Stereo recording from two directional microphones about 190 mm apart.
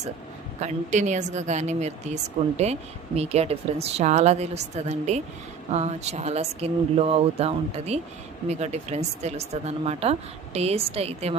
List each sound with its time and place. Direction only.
0.6 s speech: 40° right (ahead or behind)